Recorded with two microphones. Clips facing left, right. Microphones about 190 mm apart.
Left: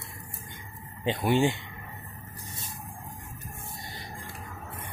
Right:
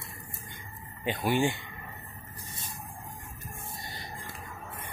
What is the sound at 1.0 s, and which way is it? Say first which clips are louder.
Speech: left 3 dB; 20° left (ahead or behind).